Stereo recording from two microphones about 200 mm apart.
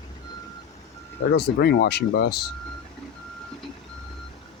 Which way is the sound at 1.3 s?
55° left (ahead or behind).